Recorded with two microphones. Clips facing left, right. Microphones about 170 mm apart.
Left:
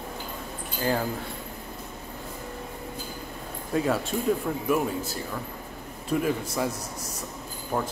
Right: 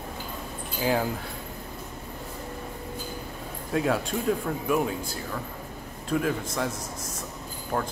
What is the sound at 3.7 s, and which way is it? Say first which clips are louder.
Speech: even; centre (ahead or behind).